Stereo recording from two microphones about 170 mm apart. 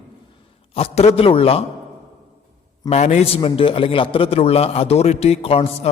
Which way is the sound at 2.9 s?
40° left (ahead or behind).